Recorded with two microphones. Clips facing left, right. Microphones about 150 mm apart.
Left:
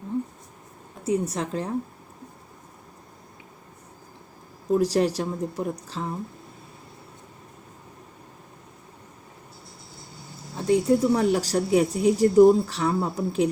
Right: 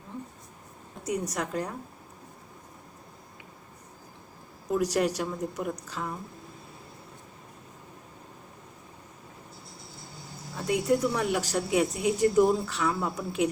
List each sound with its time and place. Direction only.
1.0 s a woman's voice: 30° left (ahead or behind)
4.7 s speech: 30° left (ahead or behind)
10.7 s speech: 30° left (ahead or behind)